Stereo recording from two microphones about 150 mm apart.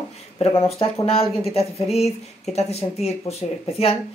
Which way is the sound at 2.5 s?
45° left (ahead or behind).